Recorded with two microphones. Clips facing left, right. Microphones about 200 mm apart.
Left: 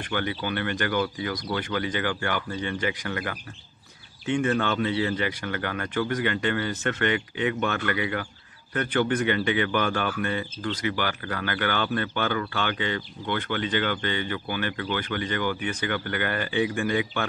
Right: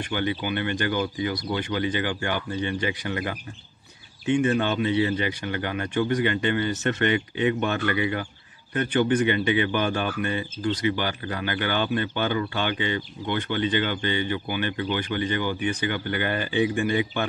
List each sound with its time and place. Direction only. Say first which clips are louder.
0.1 s speech: right 1 dB; 20° right (ahead or behind)